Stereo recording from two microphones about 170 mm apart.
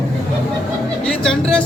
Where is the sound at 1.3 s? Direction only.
5° left (ahead or behind).